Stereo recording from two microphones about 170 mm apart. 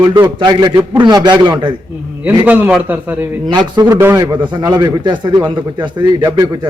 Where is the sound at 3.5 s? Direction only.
25° right (ahead or behind).